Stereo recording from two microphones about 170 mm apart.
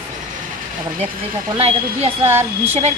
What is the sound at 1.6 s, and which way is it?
A woman's voice, 35° right (ahead or behind).